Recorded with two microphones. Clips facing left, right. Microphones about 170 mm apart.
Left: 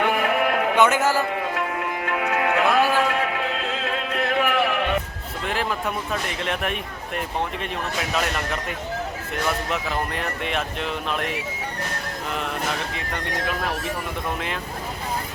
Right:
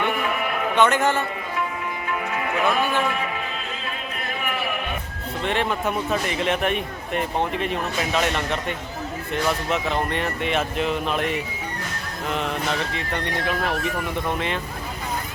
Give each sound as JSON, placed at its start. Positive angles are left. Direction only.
{"t": 0.0, "sound": "music", "side_deg": 75}
{"t": 0.8, "sound": "a man's voice", "side_deg": 5}
{"t": 2.0, "sound": "music", "side_deg": 70}
{"t": 5.5, "sound": "speech", "side_deg": 0}
{"t": 9.6, "sound": "speech", "side_deg": 0}